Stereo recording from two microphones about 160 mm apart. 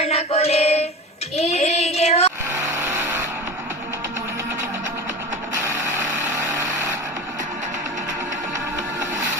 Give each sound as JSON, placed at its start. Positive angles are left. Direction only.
{"t": 0.0, "sound": "music", "side_deg": 40}
{"t": 1.4, "sound": "child singing", "side_deg": 45}
{"t": 2.5, "sound": "vehicle", "side_deg": -15}
{"t": 5.6, "sound": "a sound", "side_deg": -15}